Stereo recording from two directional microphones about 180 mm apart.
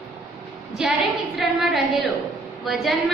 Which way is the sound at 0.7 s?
Centre (ahead or behind).